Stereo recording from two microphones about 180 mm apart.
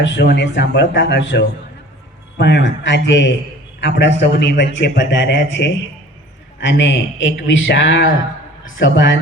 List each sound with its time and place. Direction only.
0.0 s a man's voice: 75° left (ahead or behind)
3.8 s a man's voice: 70° left (ahead or behind)